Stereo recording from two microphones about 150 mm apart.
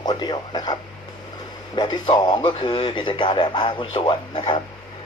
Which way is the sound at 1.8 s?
30° left (ahead or behind).